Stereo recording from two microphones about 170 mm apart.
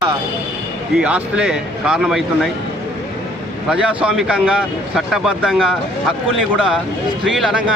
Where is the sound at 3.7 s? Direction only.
5° right (ahead or behind).